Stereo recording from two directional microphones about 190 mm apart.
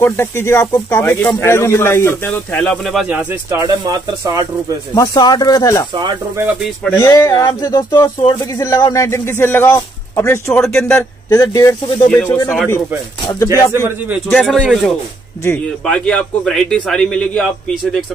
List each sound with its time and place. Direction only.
0.0 s speech: 15° left (ahead or behind); by 4.5 s 20° right (ahead or behind)
4.9 s speech: 20° left (ahead or behind)
5.9 s speech: 25° right (ahead or behind)
6.4 s a man's voice: 5° left (ahead or behind)
7.0 s speech: 15° left (ahead or behind)
13.2 s speech: 20° left (ahead or behind)
13.7 s speech: 15° right (ahead or behind)
14.3 s a man's voice: 5° left (ahead or behind)